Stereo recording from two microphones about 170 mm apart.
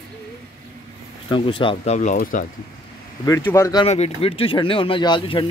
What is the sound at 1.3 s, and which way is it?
Speech, 30° left (ahead or behind).